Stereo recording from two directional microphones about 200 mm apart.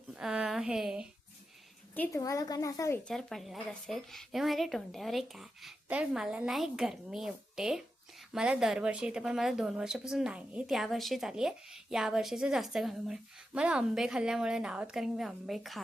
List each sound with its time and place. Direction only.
0.1 s a woman's voice: 5° right (ahead or behind)
2.0 s a woman's voice: 15° left (ahead or behind)
3.1 s speech: centre (ahead or behind)